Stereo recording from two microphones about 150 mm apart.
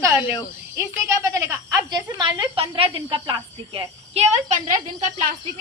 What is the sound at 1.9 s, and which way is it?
A woman's voice, 30° right (ahead or behind).